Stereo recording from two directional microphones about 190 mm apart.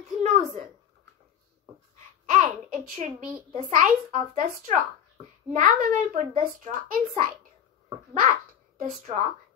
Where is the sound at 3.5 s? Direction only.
35° right (ahead or behind).